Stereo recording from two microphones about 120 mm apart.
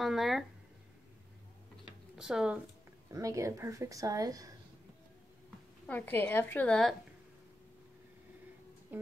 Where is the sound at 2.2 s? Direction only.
5° right (ahead or behind).